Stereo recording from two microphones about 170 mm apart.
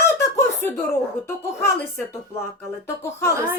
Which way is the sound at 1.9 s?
15° left (ahead or behind).